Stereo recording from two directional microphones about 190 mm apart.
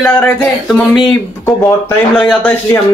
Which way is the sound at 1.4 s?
15° left (ahead or behind).